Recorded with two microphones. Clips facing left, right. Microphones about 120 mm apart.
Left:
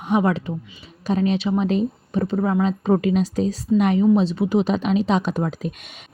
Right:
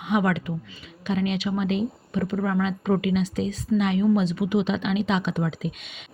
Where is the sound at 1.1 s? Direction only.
35° left (ahead or behind).